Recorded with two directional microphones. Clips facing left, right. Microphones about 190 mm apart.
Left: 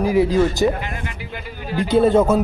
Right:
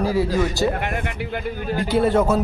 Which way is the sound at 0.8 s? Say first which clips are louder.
Right 4 dB; 60° right (ahead or behind).